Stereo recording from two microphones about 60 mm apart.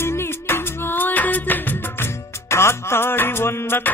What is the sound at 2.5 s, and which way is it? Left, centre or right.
Music, left.